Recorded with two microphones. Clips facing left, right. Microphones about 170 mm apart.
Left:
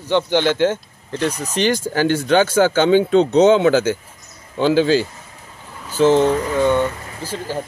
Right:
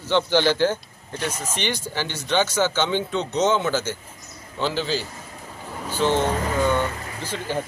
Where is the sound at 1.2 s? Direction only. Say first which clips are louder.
Left 8 dB; 40° left (ahead or behind); by 3.9 s 60° left (ahead or behind).